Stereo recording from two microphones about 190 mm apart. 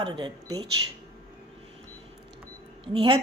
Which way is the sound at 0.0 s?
25° right (ahead or behind).